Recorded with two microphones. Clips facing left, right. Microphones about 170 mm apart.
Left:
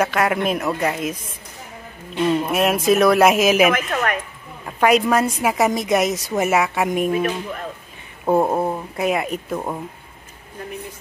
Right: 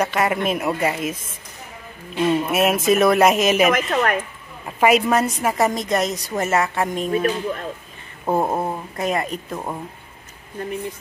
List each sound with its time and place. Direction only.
0.0 s speech: centre (ahead or behind)
2.1 s speech: 5° right (ahead or behind)
3.9 s speech: 35° right (ahead or behind)
4.6 s a woman's voice: 5° right (ahead or behind)
8.3 s speech: 5° left (ahead or behind)